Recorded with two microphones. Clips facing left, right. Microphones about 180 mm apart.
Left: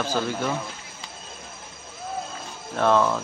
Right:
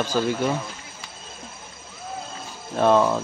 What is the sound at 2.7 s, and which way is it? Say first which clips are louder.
Speech: right 2 dB; 15° right (ahead or behind).